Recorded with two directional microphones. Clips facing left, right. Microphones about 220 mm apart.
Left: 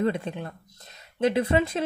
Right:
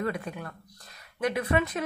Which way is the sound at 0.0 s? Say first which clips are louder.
Left 5 dB; 25° left (ahead or behind).